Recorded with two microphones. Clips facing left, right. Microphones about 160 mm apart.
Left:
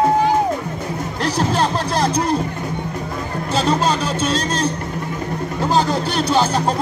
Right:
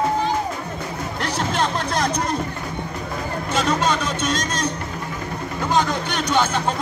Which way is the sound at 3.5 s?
30° left (ahead or behind).